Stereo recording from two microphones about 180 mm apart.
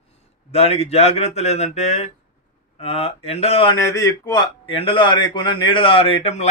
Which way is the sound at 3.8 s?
15° left (ahead or behind).